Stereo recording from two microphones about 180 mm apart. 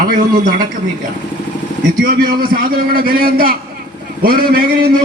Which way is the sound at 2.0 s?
50° right (ahead or behind).